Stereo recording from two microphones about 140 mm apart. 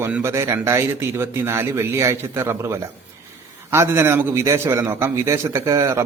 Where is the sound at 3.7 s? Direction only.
20° right (ahead or behind).